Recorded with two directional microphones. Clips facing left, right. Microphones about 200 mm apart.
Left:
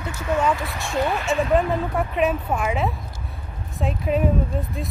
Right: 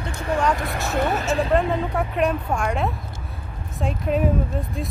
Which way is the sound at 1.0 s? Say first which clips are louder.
Even; 40° right (ahead or behind).